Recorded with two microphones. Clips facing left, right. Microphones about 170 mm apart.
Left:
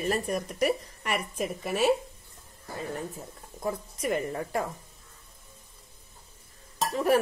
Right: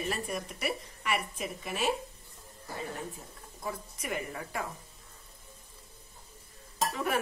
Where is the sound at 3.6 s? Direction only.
40° left (ahead or behind).